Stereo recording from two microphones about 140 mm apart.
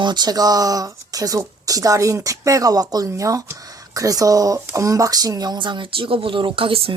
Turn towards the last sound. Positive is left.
turn(degrees=-40)  # may be behind; listen again after turning